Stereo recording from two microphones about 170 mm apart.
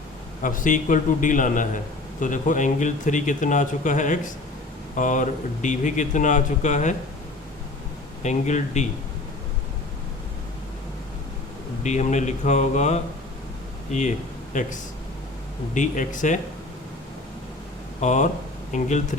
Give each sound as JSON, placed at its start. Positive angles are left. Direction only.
{"t": 0.4, "sound": "speech", "side_deg": 50}
{"t": 8.2, "sound": "speech", "side_deg": 45}
{"t": 11.8, "sound": "speech", "side_deg": 45}
{"t": 14.5, "sound": "speech", "side_deg": 45}
{"t": 15.7, "sound": "speech", "side_deg": 50}
{"t": 18.0, "sound": "speech", "side_deg": 45}